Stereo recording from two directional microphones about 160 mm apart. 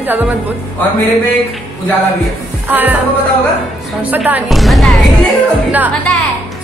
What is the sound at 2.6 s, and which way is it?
Speech, 10° right (ahead or behind).